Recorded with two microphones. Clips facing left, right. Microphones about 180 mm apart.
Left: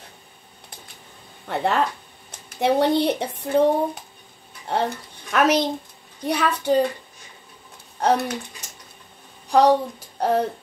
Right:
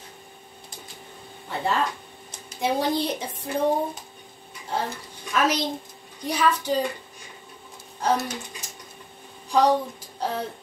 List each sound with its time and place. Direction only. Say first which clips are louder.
1.5 s speech: left 4 dB; 65° left (ahead or behind)
8.0 s speech: left 4 dB; 65° left (ahead or behind)